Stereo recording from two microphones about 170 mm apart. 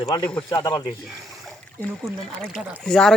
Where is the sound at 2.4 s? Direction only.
5° left (ahead or behind).